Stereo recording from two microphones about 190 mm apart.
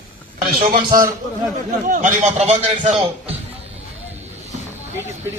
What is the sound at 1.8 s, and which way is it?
A man's voice, 45° right (ahead or behind).